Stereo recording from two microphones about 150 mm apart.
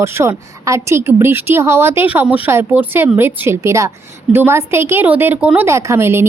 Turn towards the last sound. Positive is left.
turn(degrees=-15)  # may be behind; listen again after turning